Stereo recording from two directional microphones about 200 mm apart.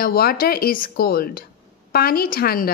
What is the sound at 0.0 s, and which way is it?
A woman's voice, 50° left (ahead or behind).